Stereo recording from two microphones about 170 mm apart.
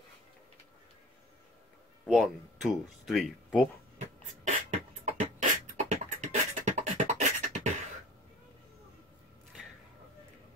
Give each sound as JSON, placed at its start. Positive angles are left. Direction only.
{"t": 2.0, "sound": "speech", "side_deg": 0}
{"t": 4.5, "sound": "beatboxing", "side_deg": -45}